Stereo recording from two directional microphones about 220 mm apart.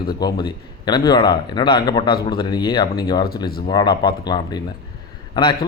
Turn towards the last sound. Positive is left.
turn(degrees=20)  # may be behind; listen again after turning